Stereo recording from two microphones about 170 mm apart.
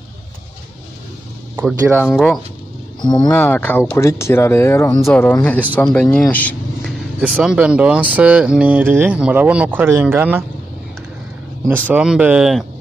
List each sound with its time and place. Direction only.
2.0 s speech: 5° left (ahead or behind)
3.0 s speech: 25° left (ahead or behind)
3.3 s speech: 10° left (ahead or behind)
6.3 s a sound: 10° left (ahead or behind)
7.2 s speech: 5° right (ahead or behind)
11.9 s speech: 5° right (ahead or behind)